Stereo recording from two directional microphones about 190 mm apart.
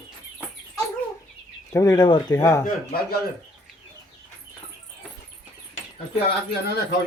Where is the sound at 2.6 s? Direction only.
50° left (ahead or behind).